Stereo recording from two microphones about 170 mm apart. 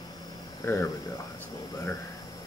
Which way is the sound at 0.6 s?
20° left (ahead or behind).